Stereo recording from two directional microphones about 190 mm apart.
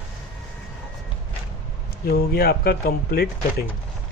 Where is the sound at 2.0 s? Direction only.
55° left (ahead or behind).